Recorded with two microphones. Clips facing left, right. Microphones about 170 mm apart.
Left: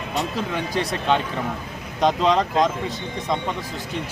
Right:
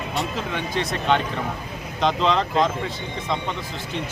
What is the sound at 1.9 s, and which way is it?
Speech, 40° left (ahead or behind).